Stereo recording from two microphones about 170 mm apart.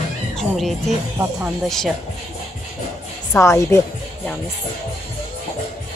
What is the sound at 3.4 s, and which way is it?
Speech, 15° left (ahead or behind).